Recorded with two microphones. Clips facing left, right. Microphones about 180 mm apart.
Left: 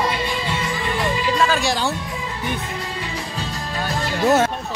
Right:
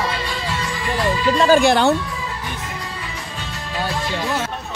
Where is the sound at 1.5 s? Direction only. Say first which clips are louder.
Right 8 dB; 55° right (ahead or behind).